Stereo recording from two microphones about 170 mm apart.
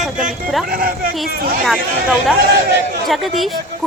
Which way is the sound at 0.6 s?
60° right (ahead or behind).